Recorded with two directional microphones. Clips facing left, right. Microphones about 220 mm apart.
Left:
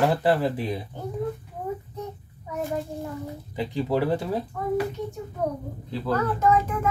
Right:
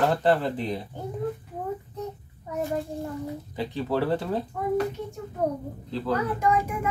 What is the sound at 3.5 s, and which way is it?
Speech, 15° left (ahead or behind).